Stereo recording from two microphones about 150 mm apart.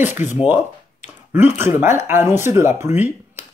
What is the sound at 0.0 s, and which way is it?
Speech, 15° right (ahead or behind).